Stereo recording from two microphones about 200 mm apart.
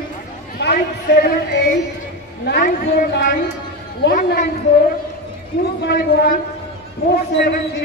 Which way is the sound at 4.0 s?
50° left (ahead or behind).